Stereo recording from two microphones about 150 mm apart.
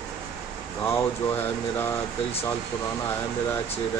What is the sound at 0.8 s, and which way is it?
Speech, 15° left (ahead or behind).